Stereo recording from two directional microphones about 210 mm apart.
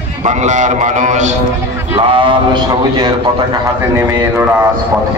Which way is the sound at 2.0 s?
25° right (ahead or behind).